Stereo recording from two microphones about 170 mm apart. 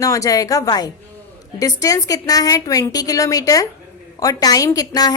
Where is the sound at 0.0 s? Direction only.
20° left (ahead or behind).